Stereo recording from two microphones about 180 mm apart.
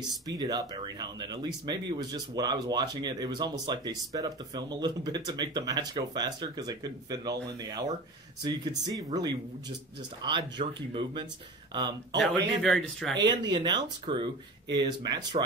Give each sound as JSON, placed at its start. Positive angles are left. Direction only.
{"t": 0.3, "sound": "speech", "side_deg": -20}
{"t": 8.5, "sound": "speech", "side_deg": -20}
{"t": 12.6, "sound": "speech", "side_deg": 0}
{"t": 13.2, "sound": "speech", "side_deg": -25}